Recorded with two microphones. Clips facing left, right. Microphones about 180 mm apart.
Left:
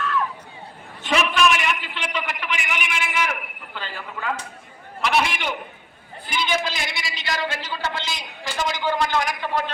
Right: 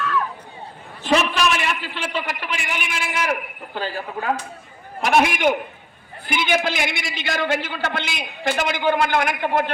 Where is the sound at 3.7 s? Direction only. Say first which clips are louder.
Right 7 dB; 45° right (ahead or behind).